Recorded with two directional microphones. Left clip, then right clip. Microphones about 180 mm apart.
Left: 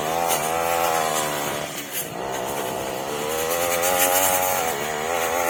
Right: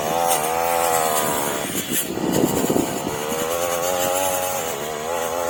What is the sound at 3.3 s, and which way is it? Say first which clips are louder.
Vehicle: even; centre (ahead or behind).